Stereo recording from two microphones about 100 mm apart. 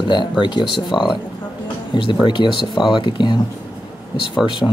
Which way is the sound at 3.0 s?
55° left (ahead or behind).